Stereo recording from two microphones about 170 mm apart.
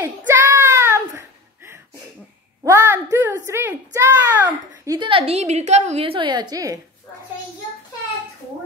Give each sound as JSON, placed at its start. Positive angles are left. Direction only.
{"t": 0.3, "sound": "child singing", "side_deg": -15}
{"t": 2.6, "sound": "a sound", "side_deg": -15}
{"t": 4.5, "sound": "a woman's voice", "side_deg": -25}